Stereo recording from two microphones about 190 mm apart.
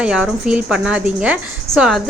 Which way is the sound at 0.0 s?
5° right (ahead or behind).